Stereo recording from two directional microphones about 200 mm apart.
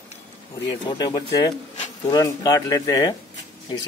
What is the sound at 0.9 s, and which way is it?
Speech, 20° left (ahead or behind).